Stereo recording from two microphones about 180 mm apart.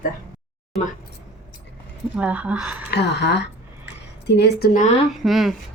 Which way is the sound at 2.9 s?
70° left (ahead or behind).